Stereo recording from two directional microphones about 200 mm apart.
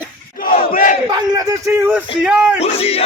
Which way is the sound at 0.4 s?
45° left (ahead or behind).